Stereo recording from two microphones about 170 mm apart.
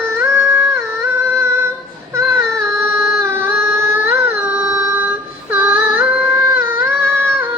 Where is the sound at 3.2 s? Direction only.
10° right (ahead or behind).